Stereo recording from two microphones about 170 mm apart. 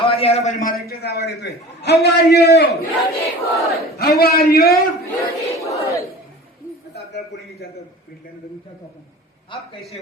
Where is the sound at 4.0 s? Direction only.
65° left (ahead or behind).